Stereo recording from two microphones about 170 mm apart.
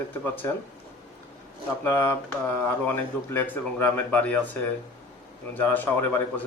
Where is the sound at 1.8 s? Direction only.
15° left (ahead or behind).